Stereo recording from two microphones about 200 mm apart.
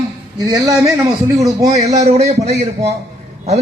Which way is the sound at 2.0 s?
35° right (ahead or behind).